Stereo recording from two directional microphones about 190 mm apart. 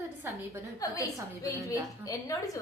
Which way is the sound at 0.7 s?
15° left (ahead or behind).